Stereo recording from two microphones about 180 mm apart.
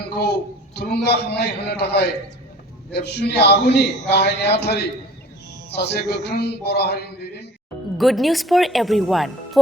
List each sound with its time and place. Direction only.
0.1 s a sound: 60° left (ahead or behind)
0.8 s a man's voice: 65° left (ahead or behind)
7.9 s speech: centre (ahead or behind)